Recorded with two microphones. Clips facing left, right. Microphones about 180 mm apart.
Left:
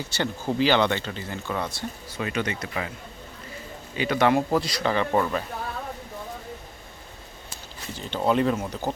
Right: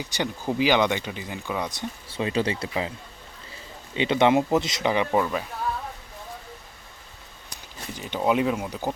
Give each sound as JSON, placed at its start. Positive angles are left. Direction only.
{"t": 0.0, "sound": "speech", "side_deg": -15}
{"t": 2.0, "sound": "speech", "side_deg": -30}
{"t": 3.9, "sound": "speech", "side_deg": -25}
{"t": 5.2, "sound": "speech", "side_deg": -5}
{"t": 7.5, "sound": "speech", "side_deg": -15}